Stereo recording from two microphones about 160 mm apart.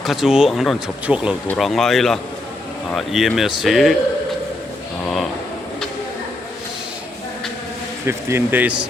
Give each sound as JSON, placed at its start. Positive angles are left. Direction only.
{"t": 0.0, "sound": "speech", "side_deg": 0}
{"t": 8.0, "sound": "speech", "side_deg": -15}